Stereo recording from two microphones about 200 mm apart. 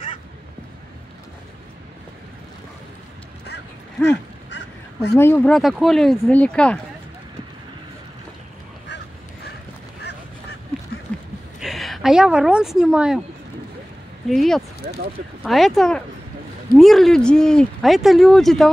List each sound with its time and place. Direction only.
3.4 s a sound: 55° left (ahead or behind)
4.5 s crow: 60° left (ahead or behind)
5.1 s speech: 10° left (ahead or behind)
11.6 s a woman's voice: centre (ahead or behind)
14.3 s speech: centre (ahead or behind)